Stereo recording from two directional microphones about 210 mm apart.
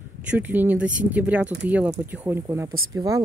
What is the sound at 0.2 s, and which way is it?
Speech, 5° right (ahead or behind).